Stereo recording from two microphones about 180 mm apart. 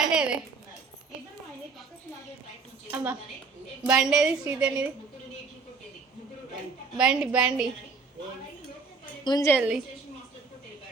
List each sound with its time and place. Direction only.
0.1 s a sound: 5° right (ahead or behind)
2.9 s a woman's voice: 10° right (ahead or behind)
6.9 s a woman's voice: 5° right (ahead or behind)
9.2 s a woman's voice: 20° left (ahead or behind)
9.6 s a woman's voice: 5° right (ahead or behind)